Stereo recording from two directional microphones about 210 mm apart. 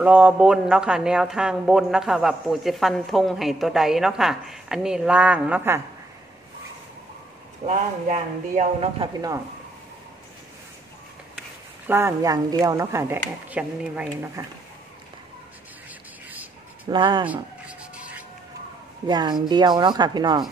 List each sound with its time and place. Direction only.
0.0 s speech: 5° right (ahead or behind)
7.6 s a man's voice: 35° right (ahead or behind)
11.9 s speech: 15° right (ahead or behind)
16.8 s speech: 20° right (ahead or behind)
17.3 s rub: 5° right (ahead or behind)
19.0 s speech: 20° right (ahead or behind)